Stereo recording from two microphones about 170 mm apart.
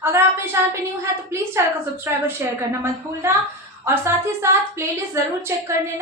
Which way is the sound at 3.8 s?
15° right (ahead or behind).